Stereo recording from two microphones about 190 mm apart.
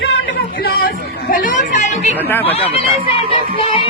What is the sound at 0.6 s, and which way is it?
Chatter, 50° left (ahead or behind).